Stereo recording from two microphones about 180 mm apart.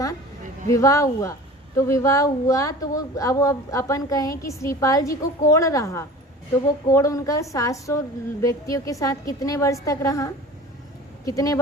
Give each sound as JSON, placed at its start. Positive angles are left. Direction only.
{"t": 0.7, "sound": "a woman's voice", "side_deg": 20}